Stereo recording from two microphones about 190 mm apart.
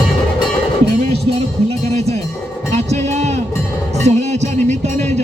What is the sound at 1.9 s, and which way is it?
Cowbell, 35° right (ahead or behind).